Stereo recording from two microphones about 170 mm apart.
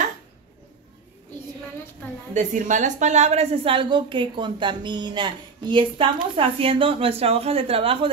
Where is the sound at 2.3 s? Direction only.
45° right (ahead or behind).